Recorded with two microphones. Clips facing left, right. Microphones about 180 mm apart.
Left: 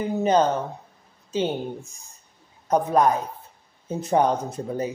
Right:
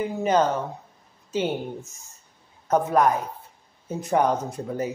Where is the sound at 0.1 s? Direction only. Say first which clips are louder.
Left 3 dB; 25° left (ahead or behind).